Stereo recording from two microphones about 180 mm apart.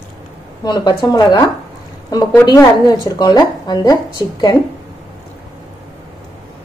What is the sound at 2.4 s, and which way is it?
A woman's voice, 20° left (ahead or behind).